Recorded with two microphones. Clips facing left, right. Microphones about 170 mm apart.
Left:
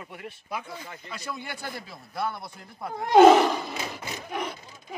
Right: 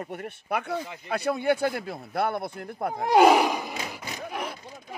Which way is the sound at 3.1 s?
10° right (ahead or behind).